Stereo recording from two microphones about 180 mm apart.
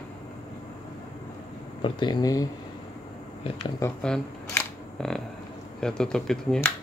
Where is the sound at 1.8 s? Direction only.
25° left (ahead or behind).